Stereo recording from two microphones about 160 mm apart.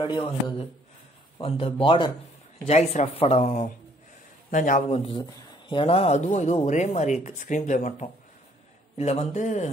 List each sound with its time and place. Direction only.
0.0 s speech: 30° left (ahead or behind)
2.6 s speech: 40° left (ahead or behind)
5.2 s speech: 30° left (ahead or behind); by 9.7 s 50° left (ahead or behind)